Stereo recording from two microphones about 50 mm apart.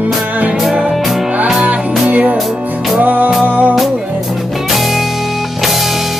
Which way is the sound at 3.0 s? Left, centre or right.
Right.